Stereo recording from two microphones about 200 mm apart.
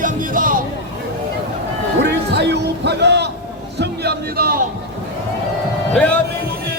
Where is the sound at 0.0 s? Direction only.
40° right (ahead or behind).